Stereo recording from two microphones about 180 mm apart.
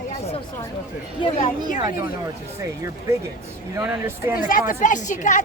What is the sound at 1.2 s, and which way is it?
Speech, 25° left (ahead or behind).